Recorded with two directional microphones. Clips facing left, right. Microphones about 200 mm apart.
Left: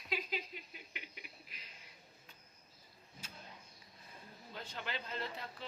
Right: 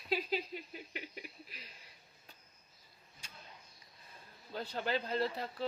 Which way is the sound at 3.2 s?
5° left (ahead or behind).